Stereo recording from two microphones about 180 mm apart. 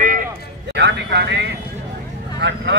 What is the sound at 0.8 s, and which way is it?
Speech, 70° right (ahead or behind).